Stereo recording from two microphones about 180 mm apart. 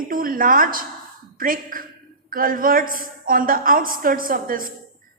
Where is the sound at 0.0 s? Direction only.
50° right (ahead or behind).